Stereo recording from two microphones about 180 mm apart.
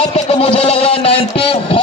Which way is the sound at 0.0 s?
35° left (ahead or behind).